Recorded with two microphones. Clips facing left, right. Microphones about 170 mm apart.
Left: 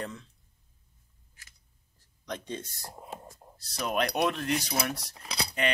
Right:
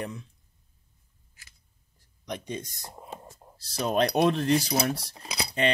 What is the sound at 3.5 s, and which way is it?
Speech, 30° right (ahead or behind).